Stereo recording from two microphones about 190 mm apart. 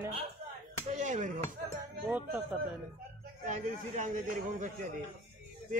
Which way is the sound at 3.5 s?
40° right (ahead or behind).